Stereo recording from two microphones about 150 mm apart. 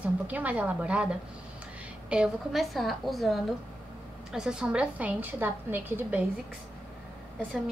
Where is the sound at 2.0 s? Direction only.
5° right (ahead or behind).